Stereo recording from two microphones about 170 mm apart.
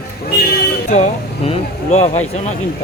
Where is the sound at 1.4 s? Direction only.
40° left (ahead or behind).